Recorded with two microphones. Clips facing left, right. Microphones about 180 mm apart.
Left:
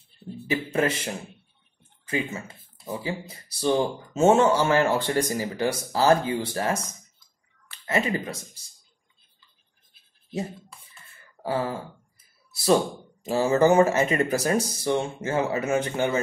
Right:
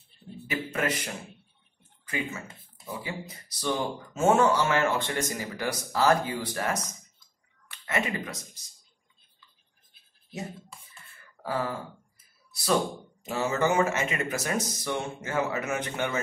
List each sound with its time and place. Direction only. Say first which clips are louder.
0.5 s speech: left 5 dB; 30° left (ahead or behind)
1.8 s a sound: left 5 dB; 30° left (ahead or behind)
3.0 s speech: left 5 dB; 30° left (ahead or behind)
11.4 s speech: left 4 dB; 25° left (ahead or behind)
13.2 s speech: left 7 dB; 30° left (ahead or behind)